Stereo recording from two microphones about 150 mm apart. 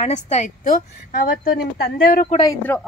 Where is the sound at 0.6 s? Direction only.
70° left (ahead or behind).